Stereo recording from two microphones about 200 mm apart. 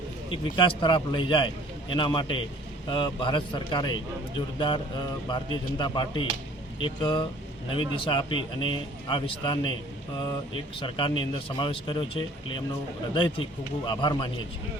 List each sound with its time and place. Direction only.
0.3 s a man's voice: 25° left (ahead or behind)